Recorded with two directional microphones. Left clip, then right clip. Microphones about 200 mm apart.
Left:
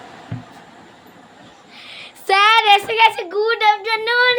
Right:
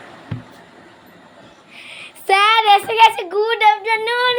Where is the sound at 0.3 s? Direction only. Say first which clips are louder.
Right 2 dB; 55° right (ahead or behind).